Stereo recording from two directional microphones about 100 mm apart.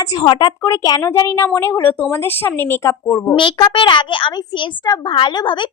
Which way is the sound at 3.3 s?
60° left (ahead or behind).